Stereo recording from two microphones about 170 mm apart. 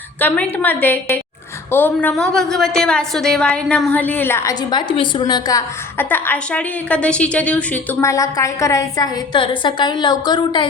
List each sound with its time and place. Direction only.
0.2 s a woman's voice: 10° left (ahead or behind)
4.7 s a woman's voice: 30° left (ahead or behind)